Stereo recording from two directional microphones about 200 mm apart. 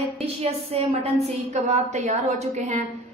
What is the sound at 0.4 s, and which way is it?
A woman's voice, 30° right (ahead or behind).